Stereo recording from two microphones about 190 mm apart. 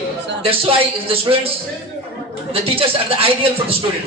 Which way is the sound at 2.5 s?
30° right (ahead or behind).